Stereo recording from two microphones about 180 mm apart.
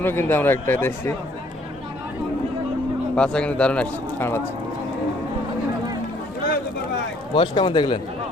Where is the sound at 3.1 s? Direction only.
5° left (ahead or behind).